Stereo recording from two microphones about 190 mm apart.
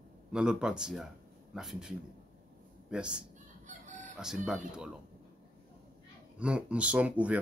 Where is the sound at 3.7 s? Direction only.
40° right (ahead or behind).